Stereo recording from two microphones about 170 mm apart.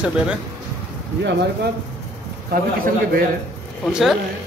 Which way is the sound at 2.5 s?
60° right (ahead or behind).